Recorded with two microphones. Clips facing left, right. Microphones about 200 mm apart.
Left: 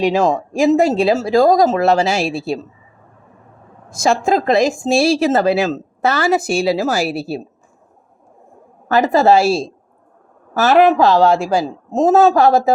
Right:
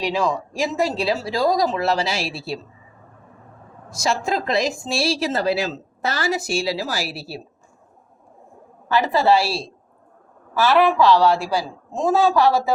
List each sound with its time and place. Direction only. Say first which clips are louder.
0.0 s a woman's voice: left 7 dB; 45° left (ahead or behind)
3.8 s a woman's voice: left 7 dB; 50° left (ahead or behind)
8.9 s a woman's voice: left 5 dB; 45° left (ahead or behind)